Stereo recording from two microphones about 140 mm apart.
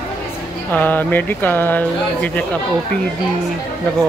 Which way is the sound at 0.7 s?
10° left (ahead or behind).